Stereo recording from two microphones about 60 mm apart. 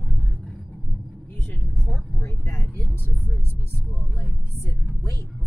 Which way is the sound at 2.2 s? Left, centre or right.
Left.